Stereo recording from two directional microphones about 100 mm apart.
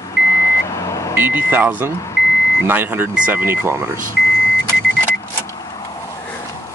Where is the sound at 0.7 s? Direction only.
30° left (ahead or behind).